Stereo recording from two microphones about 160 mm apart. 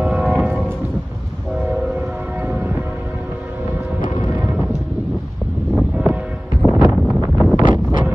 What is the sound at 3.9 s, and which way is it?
Music, 45° left (ahead or behind).